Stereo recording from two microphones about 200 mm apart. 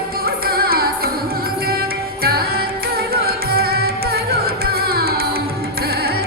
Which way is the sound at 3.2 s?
50° right (ahead or behind).